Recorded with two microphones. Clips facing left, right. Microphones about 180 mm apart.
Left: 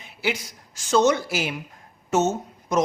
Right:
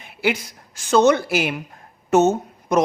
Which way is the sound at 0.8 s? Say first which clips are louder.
Right 4 dB; 60° right (ahead or behind).